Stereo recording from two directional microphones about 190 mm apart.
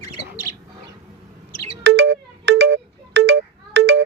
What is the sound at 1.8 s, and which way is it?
Music, 70° right (ahead or behind).